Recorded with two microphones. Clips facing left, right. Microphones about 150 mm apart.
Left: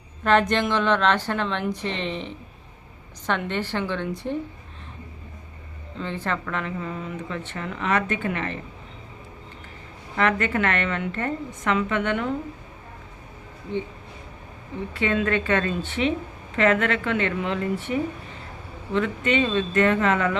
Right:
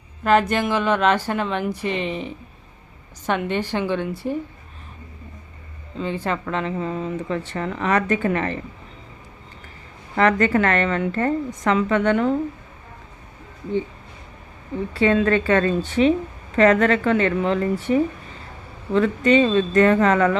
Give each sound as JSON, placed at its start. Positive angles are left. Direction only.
{"t": 0.3, "sound": "a woman's voice", "side_deg": -5}
{"t": 6.0, "sound": "a woman's voice", "side_deg": -15}
{"t": 6.4, "sound": "a woman's voice", "side_deg": -25}
{"t": 10.2, "sound": "a woman's voice", "side_deg": -35}
{"t": 14.9, "sound": "a woman's voice", "side_deg": -35}
{"t": 18.9, "sound": "a woman's voice", "side_deg": -35}